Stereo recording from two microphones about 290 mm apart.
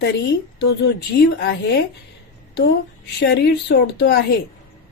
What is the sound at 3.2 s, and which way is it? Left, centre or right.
Speech, left.